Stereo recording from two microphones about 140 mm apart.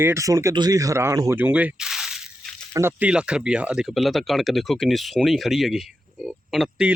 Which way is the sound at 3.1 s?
5° right (ahead or behind).